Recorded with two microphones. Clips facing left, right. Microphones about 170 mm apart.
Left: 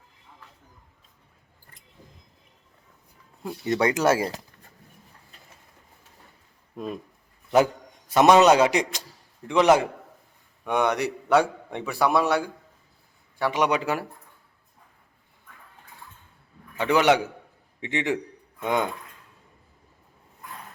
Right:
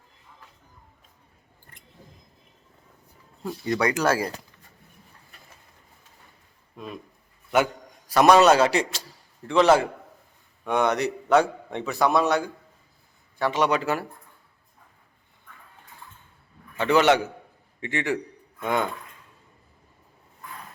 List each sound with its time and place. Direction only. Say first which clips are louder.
3.4 s speech: left 1 dB; 25° left (ahead or behind)
7.5 s a sound: left 3 dB; 35° left (ahead or behind)
8.1 s a man's voice: even; 20° left (ahead or behind)
16.7 s a man's voice: right 1 dB; 15° left (ahead or behind)